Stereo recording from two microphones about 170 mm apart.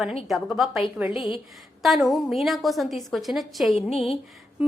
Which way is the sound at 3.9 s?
35° left (ahead or behind).